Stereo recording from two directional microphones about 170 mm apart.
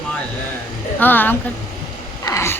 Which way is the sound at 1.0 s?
10° left (ahead or behind).